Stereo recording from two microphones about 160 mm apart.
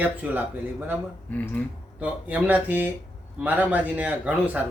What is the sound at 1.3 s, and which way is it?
Speech, 10° left (ahead or behind).